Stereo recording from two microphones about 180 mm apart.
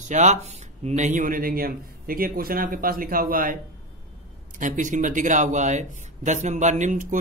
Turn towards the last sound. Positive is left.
turn(degrees=-45)  # may be behind; listen again after turning